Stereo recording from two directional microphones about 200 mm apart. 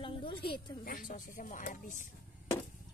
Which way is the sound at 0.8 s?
45° left (ahead or behind).